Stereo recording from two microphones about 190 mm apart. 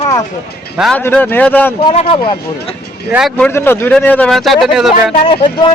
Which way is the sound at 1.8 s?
30° left (ahead or behind).